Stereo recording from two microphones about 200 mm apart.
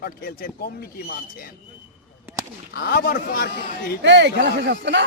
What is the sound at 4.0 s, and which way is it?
Speech, 60° right (ahead or behind).